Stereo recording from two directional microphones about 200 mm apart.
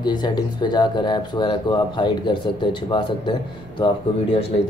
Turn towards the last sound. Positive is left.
turn(degrees=30)  # may be behind; listen again after turning